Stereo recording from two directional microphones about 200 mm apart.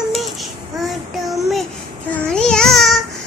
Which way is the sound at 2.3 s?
5° left (ahead or behind).